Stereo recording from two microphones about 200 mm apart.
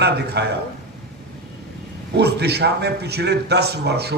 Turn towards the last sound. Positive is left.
turn(degrees=-55)  # may be behind; listen again after turning